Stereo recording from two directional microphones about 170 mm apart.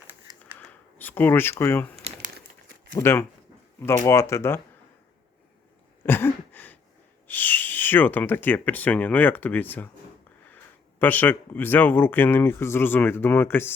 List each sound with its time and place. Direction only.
0.9 s speech: 10° left (ahead or behind)
3.0 s speech: 15° left (ahead or behind)
6.1 s a sound: 10° left (ahead or behind)
7.3 s speech: 10° left (ahead or behind)
11.0 s speech: 10° left (ahead or behind)